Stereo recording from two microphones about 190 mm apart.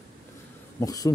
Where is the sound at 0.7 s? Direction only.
20° left (ahead or behind).